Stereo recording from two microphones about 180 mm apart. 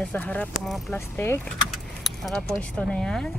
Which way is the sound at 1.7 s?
Centre (ahead or behind).